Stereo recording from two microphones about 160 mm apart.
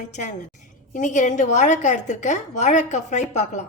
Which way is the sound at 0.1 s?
50° left (ahead or behind).